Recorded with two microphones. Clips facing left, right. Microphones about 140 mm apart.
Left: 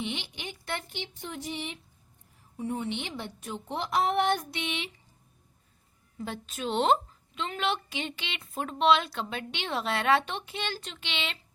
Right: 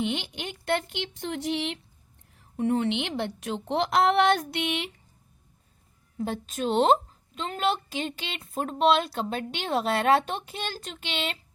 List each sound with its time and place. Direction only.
0.0 s a woman's voice: 55° right (ahead or behind)
6.1 s a woman's voice: 45° right (ahead or behind)